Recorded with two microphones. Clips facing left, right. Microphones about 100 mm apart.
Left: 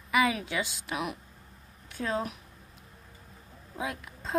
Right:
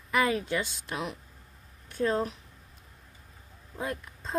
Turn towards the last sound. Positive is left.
turn(degrees=5)  # may be behind; listen again after turning